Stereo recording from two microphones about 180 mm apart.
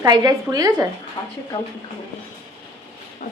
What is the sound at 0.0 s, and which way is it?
Speech, 20° right (ahead or behind).